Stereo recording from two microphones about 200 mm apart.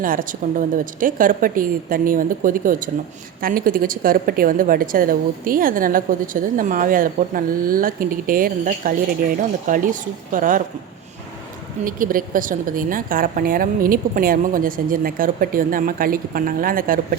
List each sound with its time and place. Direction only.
0.0 s a woman's voice: 45° right (ahead or behind)
11.9 s a woman's voice: 45° right (ahead or behind)